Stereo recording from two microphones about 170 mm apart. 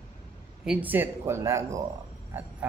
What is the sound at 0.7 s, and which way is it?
Speech, 10° right (ahead or behind).